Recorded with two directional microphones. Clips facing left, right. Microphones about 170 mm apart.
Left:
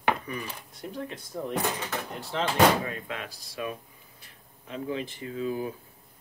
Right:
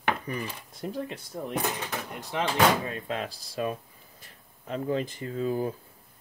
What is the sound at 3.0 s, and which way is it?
Speech, 35° right (ahead or behind).